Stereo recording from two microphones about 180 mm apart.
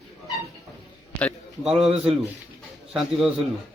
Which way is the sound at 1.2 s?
Centre (ahead or behind).